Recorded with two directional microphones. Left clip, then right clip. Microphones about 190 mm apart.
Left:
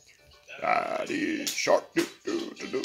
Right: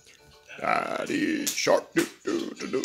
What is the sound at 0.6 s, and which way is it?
Speech, 30° right (ahead or behind).